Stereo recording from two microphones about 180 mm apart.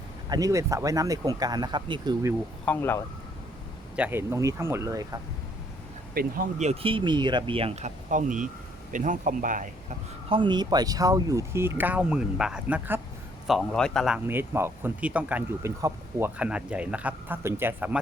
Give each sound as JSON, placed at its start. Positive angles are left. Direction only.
{"t": 0.3, "sound": "speech", "side_deg": -20}
{"t": 2.6, "sound": "speech", "side_deg": 10}
{"t": 3.9, "sound": "speech", "side_deg": -10}
{"t": 6.1, "sound": "speech", "side_deg": -50}
{"t": 10.2, "sound": "speech", "side_deg": -25}
{"t": 13.5, "sound": "a man's voice", "side_deg": 5}
{"t": 14.3, "sound": "speech", "side_deg": -10}